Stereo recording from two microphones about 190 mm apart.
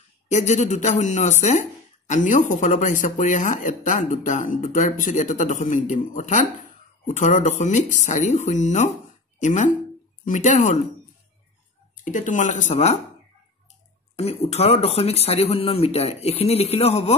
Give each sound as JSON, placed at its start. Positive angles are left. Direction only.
{"t": 0.3, "sound": "speech", "side_deg": 40}
{"t": 12.0, "sound": "speech", "side_deg": 45}
{"t": 14.1, "sound": "speech", "side_deg": 35}